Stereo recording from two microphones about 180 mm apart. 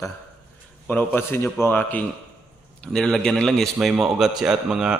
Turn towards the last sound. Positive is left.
turn(degrees=-5)  # may be behind; listen again after turning